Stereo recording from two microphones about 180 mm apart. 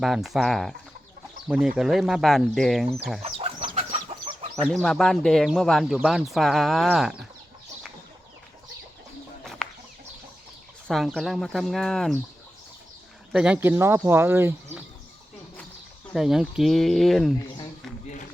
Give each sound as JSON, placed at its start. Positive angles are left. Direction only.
{"t": 0.0, "sound": "speech", "side_deg": 0}
{"t": 3.2, "sound": "chicken", "side_deg": -35}
{"t": 4.6, "sound": "speech", "side_deg": 0}
{"t": 9.4, "sound": "chicken", "side_deg": 5}
{"t": 10.8, "sound": "speech", "side_deg": 0}
{"t": 13.3, "sound": "speech", "side_deg": -5}
{"t": 16.1, "sound": "speech", "side_deg": 0}